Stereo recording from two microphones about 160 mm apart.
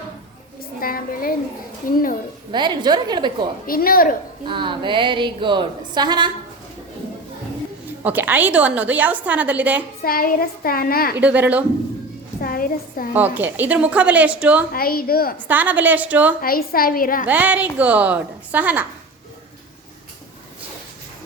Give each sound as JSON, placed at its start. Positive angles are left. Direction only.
{"t": 0.8, "sound": "a woman's voice", "side_deg": 65}
{"t": 2.5, "sound": "a woman's voice", "side_deg": -30}
{"t": 3.7, "sound": "a woman's voice", "side_deg": 65}
{"t": 4.4, "sound": "speech", "side_deg": -30}
{"t": 8.0, "sound": "a woman's voice", "side_deg": -10}
{"t": 10.0, "sound": "a child's voice", "side_deg": 65}
{"t": 11.2, "sound": "a woman's voice", "side_deg": -10}
{"t": 12.4, "sound": "a woman's voice", "side_deg": 60}
{"t": 13.1, "sound": "a woman's voice", "side_deg": -10}
{"t": 14.7, "sound": "a child's voice", "side_deg": 70}
{"t": 15.4, "sound": "a woman's voice", "side_deg": -10}
{"t": 16.4, "sound": "a woman's voice", "side_deg": 65}
{"t": 17.2, "sound": "a woman's voice", "side_deg": -10}